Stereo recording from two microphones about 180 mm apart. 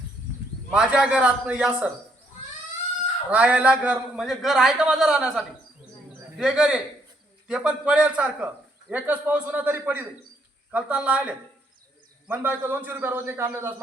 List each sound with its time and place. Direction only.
0.7 s a man's voice: 5° right (ahead or behind)
3.2 s a man's voice: 5° right (ahead or behind)